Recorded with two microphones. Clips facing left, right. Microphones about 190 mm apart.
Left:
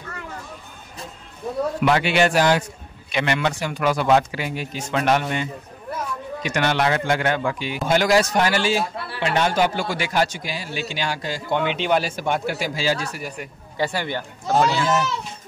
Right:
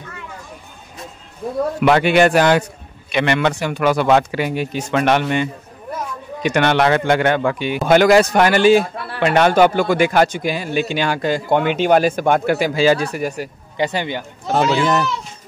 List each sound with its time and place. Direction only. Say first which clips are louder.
1.9 s speech: right 6 dB; 55° right (ahead or behind)
13.7 s speech: right 3 dB; 20° right (ahead or behind)